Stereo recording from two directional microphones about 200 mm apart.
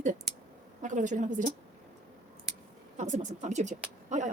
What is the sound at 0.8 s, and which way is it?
Speech, 40° right (ahead or behind).